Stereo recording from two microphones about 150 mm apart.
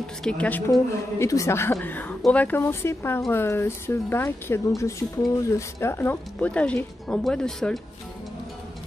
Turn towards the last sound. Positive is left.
turn(degrees=5)  # may be behind; listen again after turning